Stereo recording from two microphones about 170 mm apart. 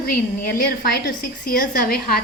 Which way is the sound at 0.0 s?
65° left (ahead or behind).